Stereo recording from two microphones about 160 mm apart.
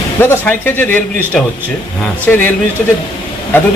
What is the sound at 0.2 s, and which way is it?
Speech, 15° left (ahead or behind).